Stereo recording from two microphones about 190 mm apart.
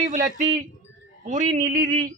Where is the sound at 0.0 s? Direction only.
40° right (ahead or behind).